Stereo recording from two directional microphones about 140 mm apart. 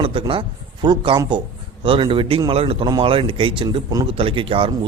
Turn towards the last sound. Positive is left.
turn(degrees=-40)  # may be behind; listen again after turning